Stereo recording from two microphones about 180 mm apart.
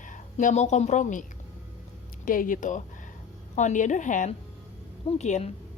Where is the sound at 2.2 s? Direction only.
50° left (ahead or behind).